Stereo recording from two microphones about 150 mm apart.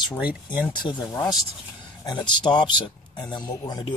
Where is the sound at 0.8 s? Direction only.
35° left (ahead or behind).